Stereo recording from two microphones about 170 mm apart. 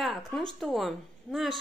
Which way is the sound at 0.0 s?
Centre (ahead or behind).